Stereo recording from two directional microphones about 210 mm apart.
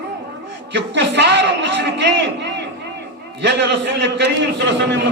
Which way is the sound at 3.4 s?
55° right (ahead or behind).